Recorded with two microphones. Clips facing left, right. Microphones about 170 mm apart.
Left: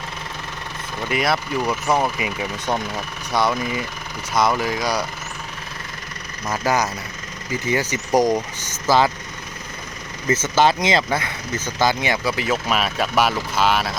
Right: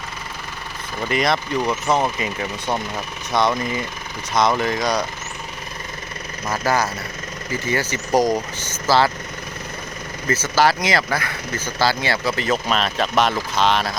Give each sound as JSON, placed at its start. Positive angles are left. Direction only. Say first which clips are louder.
{"t": 1.0, "sound": "speech", "louder": "right 1 dB", "side_deg": 5}
{"t": 6.5, "sound": "speech", "louder": "even", "side_deg": 15}
{"t": 10.2, "sound": "speech", "louder": "left 1 dB", "side_deg": 20}